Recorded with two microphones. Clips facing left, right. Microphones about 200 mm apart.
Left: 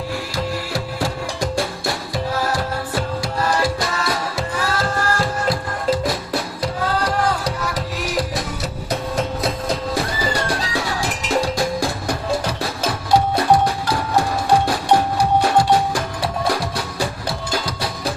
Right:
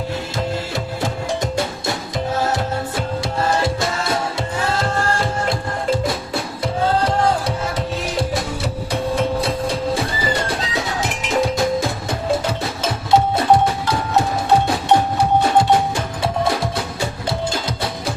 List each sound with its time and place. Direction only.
0.7 s music: 20° right (ahead or behind)